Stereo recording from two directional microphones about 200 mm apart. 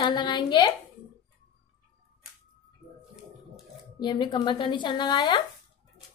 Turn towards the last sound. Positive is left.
turn(degrees=20)  # may be behind; listen again after turning